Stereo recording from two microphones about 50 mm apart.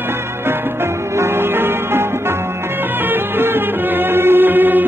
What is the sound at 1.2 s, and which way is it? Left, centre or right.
Music, right.